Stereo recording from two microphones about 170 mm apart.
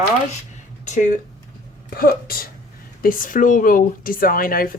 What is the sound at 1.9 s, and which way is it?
Speech, 60° left (ahead or behind).